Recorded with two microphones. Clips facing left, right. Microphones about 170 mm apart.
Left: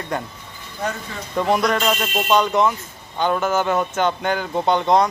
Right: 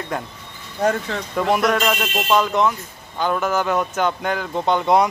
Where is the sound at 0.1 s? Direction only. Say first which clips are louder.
Left 2 dB; centre (ahead or behind).